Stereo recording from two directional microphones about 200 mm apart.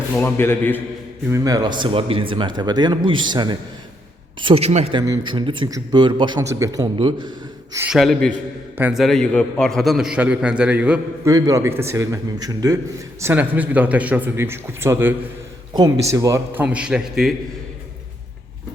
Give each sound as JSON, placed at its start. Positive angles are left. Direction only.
{"t": 0.1, "sound": "a man's voice", "side_deg": 10}
{"t": 1.3, "sound": "speech", "side_deg": -20}
{"t": 7.9, "sound": "a man's voice", "side_deg": 0}
{"t": 11.3, "sound": "a man's voice", "side_deg": -15}